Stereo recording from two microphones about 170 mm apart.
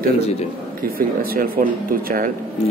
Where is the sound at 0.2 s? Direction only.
40° left (ahead or behind).